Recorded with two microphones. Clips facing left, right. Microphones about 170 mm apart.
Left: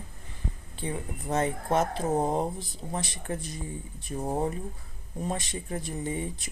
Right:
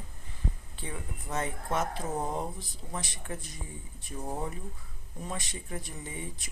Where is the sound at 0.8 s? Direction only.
30° left (ahead or behind).